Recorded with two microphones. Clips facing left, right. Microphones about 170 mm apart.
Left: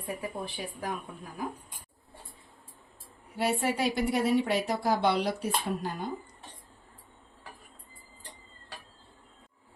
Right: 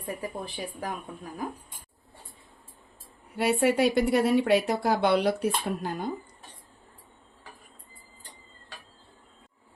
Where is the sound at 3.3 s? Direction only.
60° right (ahead or behind).